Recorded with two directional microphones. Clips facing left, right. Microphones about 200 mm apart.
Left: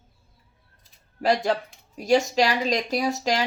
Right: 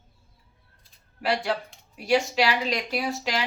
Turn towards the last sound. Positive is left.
turn(degrees=45)  # may be behind; listen again after turning